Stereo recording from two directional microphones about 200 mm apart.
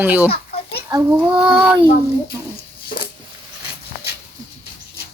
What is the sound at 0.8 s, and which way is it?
Child singing, 15° right (ahead or behind).